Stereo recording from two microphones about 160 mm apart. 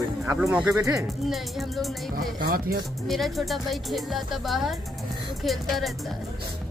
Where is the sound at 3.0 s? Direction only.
Centre (ahead or behind).